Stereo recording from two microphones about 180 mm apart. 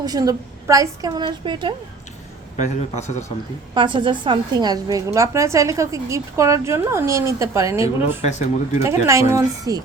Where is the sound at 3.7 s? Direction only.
25° right (ahead or behind).